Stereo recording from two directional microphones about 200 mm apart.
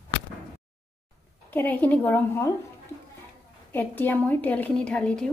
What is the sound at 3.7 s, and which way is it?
A woman's voice, 10° left (ahead or behind).